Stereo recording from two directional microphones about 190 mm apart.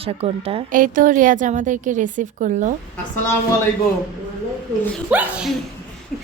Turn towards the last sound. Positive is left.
turn(degrees=-5)  # may be behind; listen again after turning